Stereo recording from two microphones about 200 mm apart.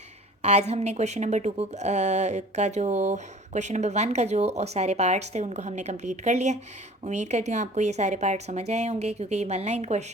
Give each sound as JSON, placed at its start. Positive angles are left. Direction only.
{"t": 0.4, "sound": "speech", "side_deg": -30}